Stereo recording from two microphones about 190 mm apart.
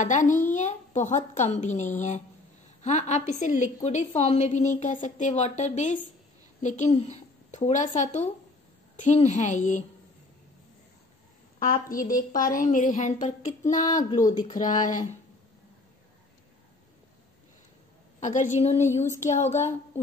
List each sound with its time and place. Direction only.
0.0 s a woman's voice: 40° left (ahead or behind)
11.6 s a woman's voice: 45° left (ahead or behind)
13.8 s speech: 20° left (ahead or behind)
14.5 s a woman's voice: 40° left (ahead or behind)
18.2 s a woman's voice: 40° left (ahead or behind)